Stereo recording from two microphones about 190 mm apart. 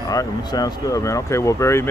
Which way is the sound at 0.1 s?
20° left (ahead or behind).